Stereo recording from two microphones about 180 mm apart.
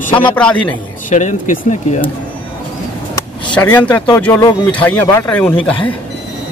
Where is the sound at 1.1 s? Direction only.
45° left (ahead or behind).